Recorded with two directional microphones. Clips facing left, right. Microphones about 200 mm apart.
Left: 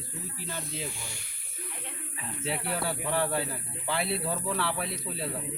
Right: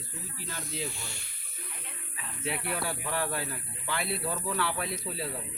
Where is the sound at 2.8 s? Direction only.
Centre (ahead or behind).